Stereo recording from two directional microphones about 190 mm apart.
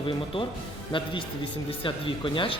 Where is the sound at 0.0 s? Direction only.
30° left (ahead or behind).